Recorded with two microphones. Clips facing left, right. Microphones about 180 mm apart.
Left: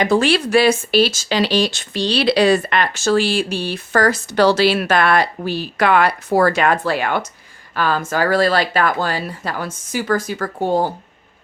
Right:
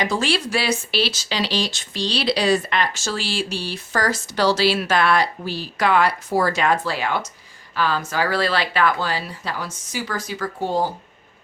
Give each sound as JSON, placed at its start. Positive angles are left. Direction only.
{"t": 0.0, "sound": "speech", "side_deg": 60}